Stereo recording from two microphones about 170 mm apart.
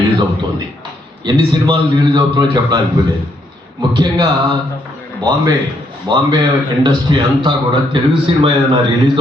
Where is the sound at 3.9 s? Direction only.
30° right (ahead or behind).